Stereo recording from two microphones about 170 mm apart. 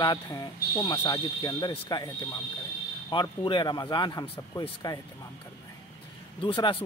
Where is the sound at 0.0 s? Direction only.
25° left (ahead or behind).